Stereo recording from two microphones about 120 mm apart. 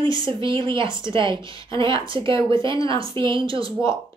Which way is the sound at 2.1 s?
45° right (ahead or behind).